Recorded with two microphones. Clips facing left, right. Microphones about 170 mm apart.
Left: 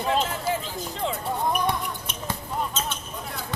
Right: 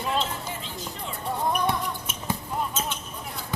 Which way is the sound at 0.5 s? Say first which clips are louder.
Left 9 dB; 90° left.